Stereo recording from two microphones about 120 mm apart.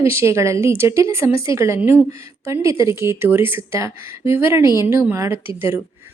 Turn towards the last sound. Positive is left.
turn(degrees=-20)  # may be behind; listen again after turning